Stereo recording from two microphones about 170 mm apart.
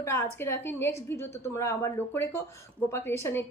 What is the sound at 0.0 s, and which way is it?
A woman's voice, 15° left (ahead or behind).